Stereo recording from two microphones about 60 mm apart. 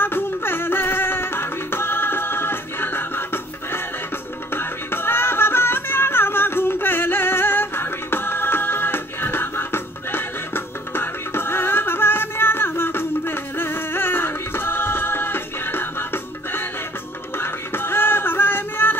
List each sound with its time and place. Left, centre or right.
0.0 s music: left
4.6 s music: left
17.4 s music: left